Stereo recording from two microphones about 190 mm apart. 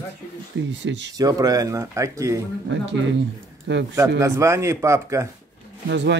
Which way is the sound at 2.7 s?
70° right (ahead or behind).